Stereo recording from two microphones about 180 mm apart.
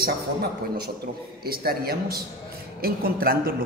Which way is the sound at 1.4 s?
60° right (ahead or behind).